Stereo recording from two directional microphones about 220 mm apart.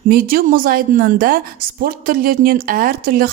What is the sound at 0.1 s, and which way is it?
Speech, 40° right (ahead or behind).